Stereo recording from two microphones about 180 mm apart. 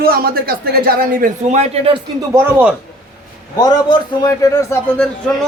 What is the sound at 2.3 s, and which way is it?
Speech, 10° right (ahead or behind).